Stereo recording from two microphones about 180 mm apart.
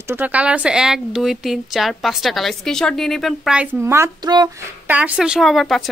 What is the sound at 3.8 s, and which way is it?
Speech, 15° right (ahead or behind).